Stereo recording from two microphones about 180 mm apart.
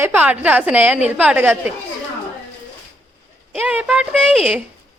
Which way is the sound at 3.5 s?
10° right (ahead or behind).